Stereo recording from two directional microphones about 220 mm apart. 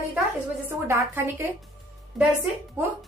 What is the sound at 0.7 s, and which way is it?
Speech, 15° right (ahead or behind).